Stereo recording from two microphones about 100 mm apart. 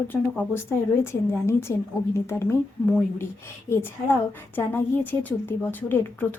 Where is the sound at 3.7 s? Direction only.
20° left (ahead or behind).